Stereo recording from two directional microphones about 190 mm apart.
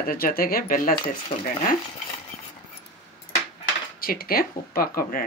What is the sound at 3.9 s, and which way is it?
Speech, 50° left (ahead or behind).